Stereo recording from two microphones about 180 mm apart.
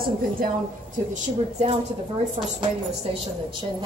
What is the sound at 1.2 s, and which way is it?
Speech, 35° right (ahead or behind).